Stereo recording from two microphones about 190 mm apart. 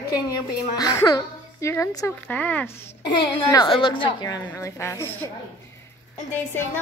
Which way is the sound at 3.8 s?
25° left (ahead or behind).